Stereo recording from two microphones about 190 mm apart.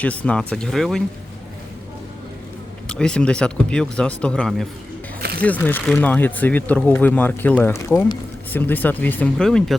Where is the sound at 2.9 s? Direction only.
5° left (ahead or behind).